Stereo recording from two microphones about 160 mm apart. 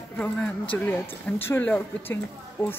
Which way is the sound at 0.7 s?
15° left (ahead or behind).